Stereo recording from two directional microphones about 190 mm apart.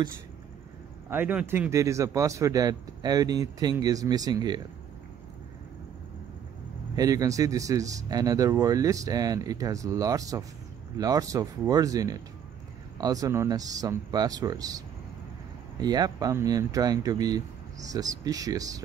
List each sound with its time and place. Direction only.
1.1 s a man's voice: 10° right (ahead or behind)
7.0 s a man's voice: 20° right (ahead or behind)
15.8 s speech: 20° right (ahead or behind)